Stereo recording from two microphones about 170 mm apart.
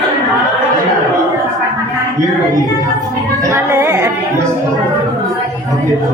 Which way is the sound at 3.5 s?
15° right (ahead or behind).